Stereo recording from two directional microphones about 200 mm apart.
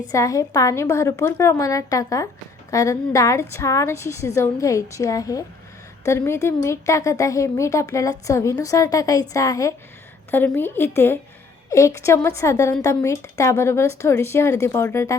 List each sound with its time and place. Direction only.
0.1 s speech: 15° left (ahead or behind)